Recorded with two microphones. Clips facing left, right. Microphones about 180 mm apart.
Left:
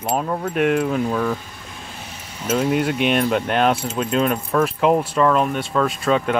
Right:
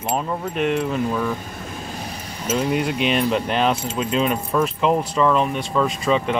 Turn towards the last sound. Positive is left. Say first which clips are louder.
# left 1 dB
turn(degrees=0)  # may be behind; listen again after turning